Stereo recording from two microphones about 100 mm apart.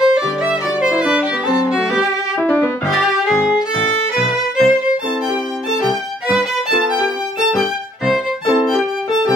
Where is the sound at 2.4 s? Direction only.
20° left (ahead or behind).